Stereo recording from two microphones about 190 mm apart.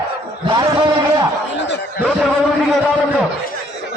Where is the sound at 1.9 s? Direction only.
5° right (ahead or behind).